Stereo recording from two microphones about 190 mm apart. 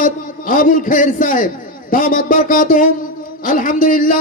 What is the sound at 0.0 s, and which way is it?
A man's voice, 45° left (ahead or behind).